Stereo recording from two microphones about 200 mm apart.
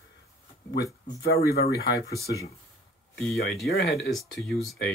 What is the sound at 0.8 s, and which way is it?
Speech, 15° left (ahead or behind).